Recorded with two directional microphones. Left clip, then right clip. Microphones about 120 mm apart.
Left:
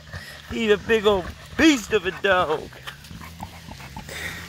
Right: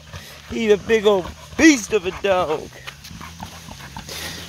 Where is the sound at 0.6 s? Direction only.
40° right (ahead or behind).